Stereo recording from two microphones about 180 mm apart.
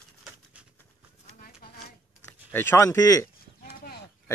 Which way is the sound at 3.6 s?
60° left (ahead or behind).